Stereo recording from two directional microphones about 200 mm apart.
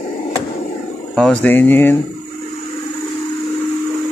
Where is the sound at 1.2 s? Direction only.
5° left (ahead or behind).